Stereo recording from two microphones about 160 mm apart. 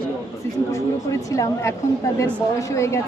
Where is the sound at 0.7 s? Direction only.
20° left (ahead or behind).